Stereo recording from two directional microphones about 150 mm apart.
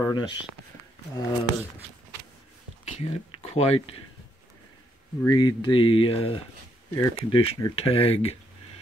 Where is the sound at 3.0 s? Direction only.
45° left (ahead or behind).